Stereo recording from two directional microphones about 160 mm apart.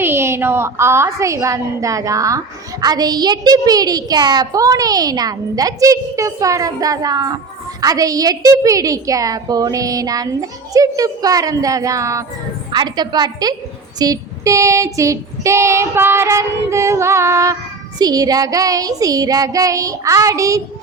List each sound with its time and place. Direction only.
0.0 s child singing: 15° right (ahead or behind)
2.8 s a woman's voice: 25° right (ahead or behind)
14.0 s child singing: 20° right (ahead or behind)
18.0 s a woman's voice: 25° right (ahead or behind)